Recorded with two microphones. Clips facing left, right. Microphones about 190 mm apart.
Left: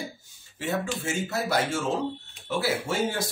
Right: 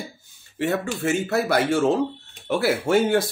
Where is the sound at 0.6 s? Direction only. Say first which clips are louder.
Right 5 dB; 65° right (ahead or behind).